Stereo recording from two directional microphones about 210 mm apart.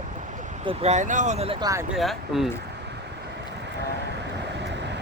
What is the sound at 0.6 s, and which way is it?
Speech, 30° right (ahead or behind).